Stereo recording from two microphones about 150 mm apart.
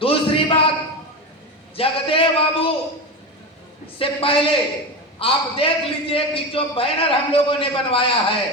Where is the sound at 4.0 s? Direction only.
35° left (ahead or behind).